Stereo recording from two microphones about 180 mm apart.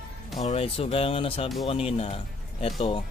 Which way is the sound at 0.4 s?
35° left (ahead or behind).